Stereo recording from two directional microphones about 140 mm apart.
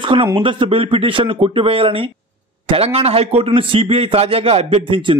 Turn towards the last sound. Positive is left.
turn(degrees=-40)  # may be behind; listen again after turning